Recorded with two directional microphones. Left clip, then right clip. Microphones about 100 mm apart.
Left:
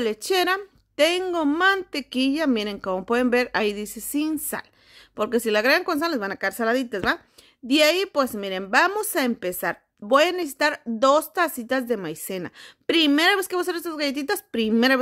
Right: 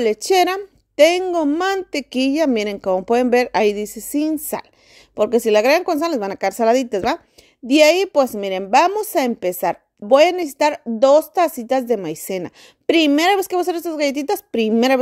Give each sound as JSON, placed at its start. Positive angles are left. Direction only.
{"t": 0.0, "sound": "a woman's voice", "side_deg": -35}
{"t": 7.6, "sound": "a woman's voice", "side_deg": -30}